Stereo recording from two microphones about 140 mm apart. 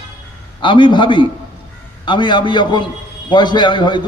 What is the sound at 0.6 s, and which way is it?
A man's voice, 35° left (ahead or behind).